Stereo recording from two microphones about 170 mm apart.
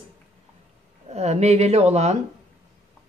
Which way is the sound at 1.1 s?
40° right (ahead or behind).